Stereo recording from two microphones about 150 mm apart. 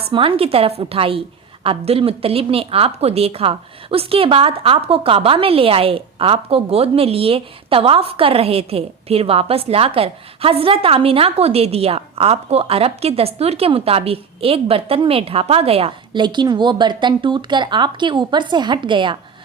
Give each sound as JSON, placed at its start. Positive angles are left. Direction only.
{"t": 0.0, "sound": "a woman's voice", "side_deg": -35}